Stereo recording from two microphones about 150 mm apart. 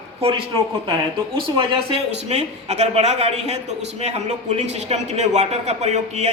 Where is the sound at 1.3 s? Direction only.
35° right (ahead or behind).